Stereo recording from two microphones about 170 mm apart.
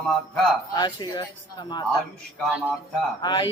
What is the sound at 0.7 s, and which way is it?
Speech, 25° left (ahead or behind).